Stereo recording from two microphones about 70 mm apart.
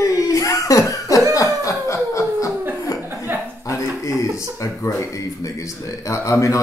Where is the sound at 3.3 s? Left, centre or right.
Right.